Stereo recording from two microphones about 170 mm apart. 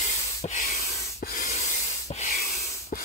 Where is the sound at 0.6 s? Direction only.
60° left (ahead or behind).